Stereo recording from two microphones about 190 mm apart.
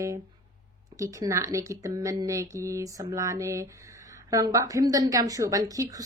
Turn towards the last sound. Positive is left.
turn(degrees=-20)  # may be behind; listen again after turning